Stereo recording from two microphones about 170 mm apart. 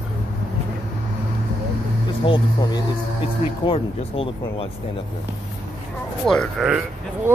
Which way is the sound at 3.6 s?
35° left (ahead or behind).